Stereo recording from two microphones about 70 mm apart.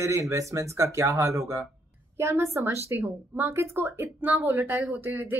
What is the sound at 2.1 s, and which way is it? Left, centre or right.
Speech, right.